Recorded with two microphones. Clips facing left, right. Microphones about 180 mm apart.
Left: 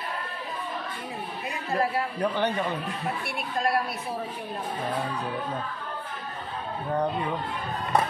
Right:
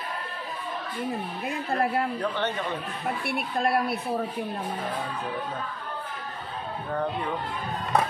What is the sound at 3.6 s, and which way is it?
Speech, 60° right (ahead or behind).